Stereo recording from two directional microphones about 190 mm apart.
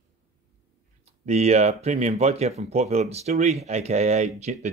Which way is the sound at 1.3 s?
35° right (ahead or behind).